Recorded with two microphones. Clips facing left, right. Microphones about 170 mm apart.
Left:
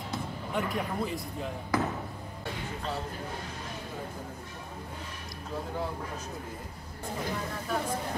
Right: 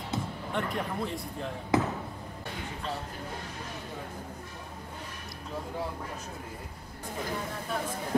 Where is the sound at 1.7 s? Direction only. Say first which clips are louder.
Right 3 dB; 25° right (ahead or behind).